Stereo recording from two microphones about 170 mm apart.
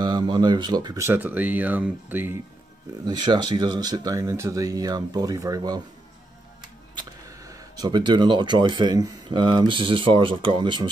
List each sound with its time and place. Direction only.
0.0 s speech: 25° right (ahead or behind)
3.1 s speech: 25° right (ahead or behind)
7.0 s speech: 20° right (ahead or behind)